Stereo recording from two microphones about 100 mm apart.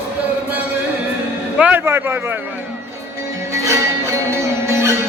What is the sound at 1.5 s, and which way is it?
Music, 15° right (ahead or behind).